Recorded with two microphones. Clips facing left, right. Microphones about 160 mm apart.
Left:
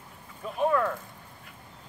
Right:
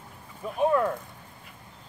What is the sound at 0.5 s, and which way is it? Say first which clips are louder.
Speech: right 2 dB; 15° right (ahead or behind).